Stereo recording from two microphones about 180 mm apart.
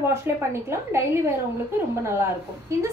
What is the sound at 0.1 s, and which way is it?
A woman's voice, 15° right (ahead or behind).